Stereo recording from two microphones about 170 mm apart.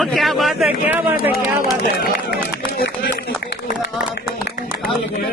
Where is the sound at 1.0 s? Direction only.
65° left (ahead or behind).